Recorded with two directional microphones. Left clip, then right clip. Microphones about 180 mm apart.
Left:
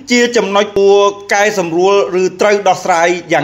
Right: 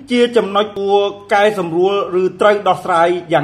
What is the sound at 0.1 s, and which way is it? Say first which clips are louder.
Speech: left 2 dB; 15° left (ahead or behind).